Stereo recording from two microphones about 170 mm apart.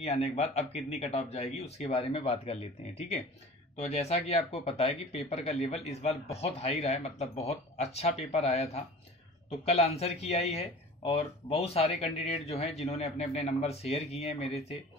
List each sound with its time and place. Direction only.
0.0 s speech: 35° left (ahead or behind)